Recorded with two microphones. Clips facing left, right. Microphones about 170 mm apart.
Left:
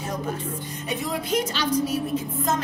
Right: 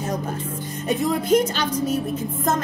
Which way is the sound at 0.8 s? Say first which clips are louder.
Right 8 dB; 50° right (ahead or behind).